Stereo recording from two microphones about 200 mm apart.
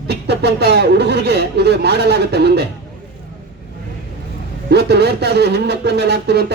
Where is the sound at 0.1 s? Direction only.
55° right (ahead or behind).